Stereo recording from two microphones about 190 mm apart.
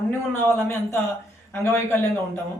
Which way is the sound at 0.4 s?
10° left (ahead or behind).